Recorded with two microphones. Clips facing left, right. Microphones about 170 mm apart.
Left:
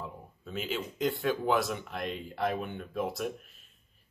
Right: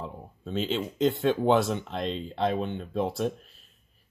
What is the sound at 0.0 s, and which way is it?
Speech, 25° right (ahead or behind).